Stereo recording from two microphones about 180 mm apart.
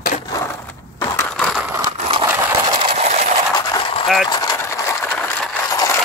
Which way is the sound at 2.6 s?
25° right (ahead or behind).